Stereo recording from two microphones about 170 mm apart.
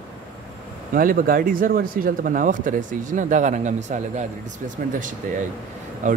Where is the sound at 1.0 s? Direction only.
55° right (ahead or behind).